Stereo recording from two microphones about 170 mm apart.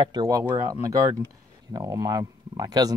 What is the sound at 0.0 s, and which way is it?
Speech, 25° right (ahead or behind).